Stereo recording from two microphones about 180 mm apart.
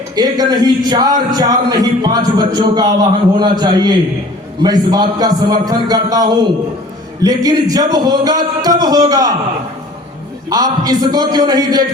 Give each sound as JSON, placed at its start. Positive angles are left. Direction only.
{"t": 0.2, "sound": "a man's voice", "side_deg": -20}
{"t": 10.5, "sound": "a man's voice", "side_deg": -20}